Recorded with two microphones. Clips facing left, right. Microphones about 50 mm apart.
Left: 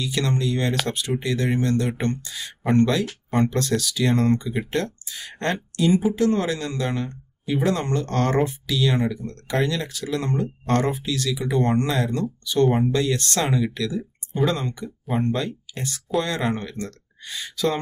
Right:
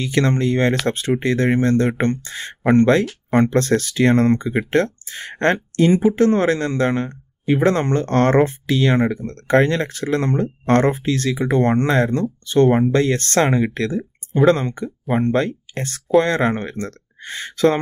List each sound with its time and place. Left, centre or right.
0.0 s speech: right